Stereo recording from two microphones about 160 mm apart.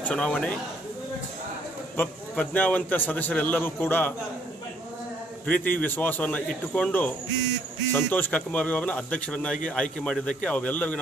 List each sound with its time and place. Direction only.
0.0 s a man's voice: 5° left (ahead or behind)
2.0 s a man's voice: 10° left (ahead or behind)
5.5 s a man's voice: 10° left (ahead or behind)